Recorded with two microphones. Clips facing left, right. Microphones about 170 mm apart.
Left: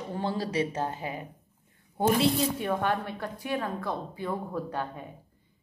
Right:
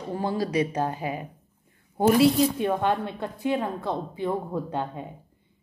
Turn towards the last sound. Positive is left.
turn(degrees=-20)  # may be behind; listen again after turning